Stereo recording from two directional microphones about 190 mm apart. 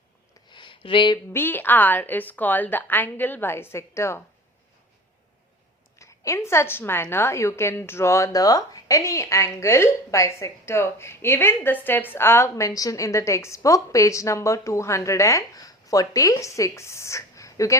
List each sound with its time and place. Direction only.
0.5 s a sound: 25° left (ahead or behind)
1.3 s a woman's voice: 10° left (ahead or behind)
6.0 s a woman's voice: 15° left (ahead or behind)